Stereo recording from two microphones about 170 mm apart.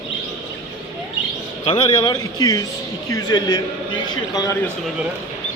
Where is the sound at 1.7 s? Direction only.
35° left (ahead or behind).